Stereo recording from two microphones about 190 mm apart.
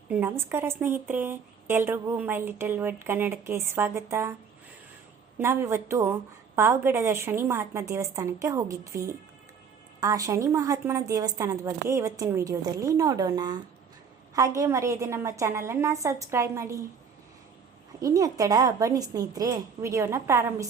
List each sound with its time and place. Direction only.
0.1 s a woman's voice: 10° right (ahead or behind)
5.4 s a woman's voice: 15° right (ahead or behind)
18.0 s a woman's voice: 20° right (ahead or behind)